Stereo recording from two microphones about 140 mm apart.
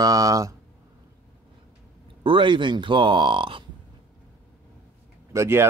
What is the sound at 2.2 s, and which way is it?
Speech, 35° right (ahead or behind).